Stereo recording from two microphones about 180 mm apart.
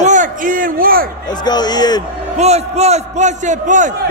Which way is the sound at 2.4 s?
35° right (ahead or behind).